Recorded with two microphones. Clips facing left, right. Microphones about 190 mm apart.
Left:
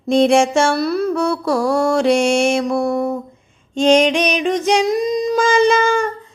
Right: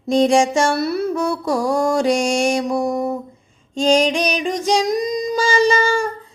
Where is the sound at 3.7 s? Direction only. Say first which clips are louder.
Left 3 dB; 35° right (ahead or behind).